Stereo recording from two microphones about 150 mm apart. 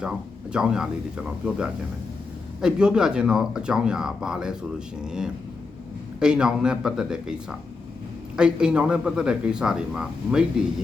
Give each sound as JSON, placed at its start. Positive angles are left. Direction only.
{"t": 0.5, "sound": "a man's voice", "side_deg": -5}
{"t": 6.1, "sound": "a man's voice", "side_deg": -5}
{"t": 8.4, "sound": "a man's voice", "side_deg": -5}